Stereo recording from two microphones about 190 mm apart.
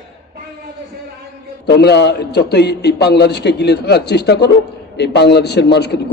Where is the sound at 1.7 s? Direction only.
60° left (ahead or behind).